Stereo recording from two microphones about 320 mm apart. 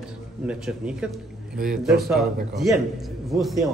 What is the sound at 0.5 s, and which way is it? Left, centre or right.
A man's voice, centre.